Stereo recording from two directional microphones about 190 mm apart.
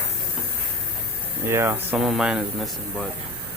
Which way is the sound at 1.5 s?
10° right (ahead or behind).